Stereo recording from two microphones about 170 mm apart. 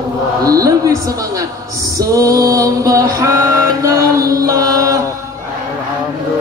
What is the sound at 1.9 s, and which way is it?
Music, 20° right (ahead or behind).